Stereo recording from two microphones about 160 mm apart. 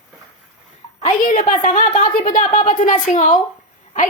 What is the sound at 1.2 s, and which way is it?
A woman's voice, 50° left (ahead or behind).